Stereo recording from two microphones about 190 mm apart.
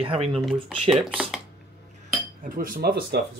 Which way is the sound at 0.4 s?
Centre (ahead or behind).